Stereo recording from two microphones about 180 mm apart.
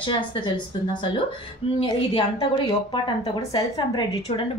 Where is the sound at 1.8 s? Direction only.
25° left (ahead or behind).